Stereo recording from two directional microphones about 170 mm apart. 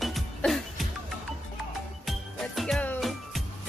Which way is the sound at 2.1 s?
Centre (ahead or behind).